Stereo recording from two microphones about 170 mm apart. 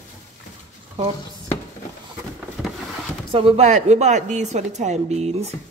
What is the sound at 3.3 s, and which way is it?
A woman's voice, 35° right (ahead or behind).